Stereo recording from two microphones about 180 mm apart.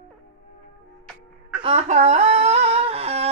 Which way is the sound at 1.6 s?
35° right (ahead or behind).